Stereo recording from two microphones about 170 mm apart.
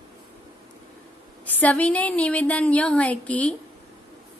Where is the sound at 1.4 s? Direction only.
10° left (ahead or behind).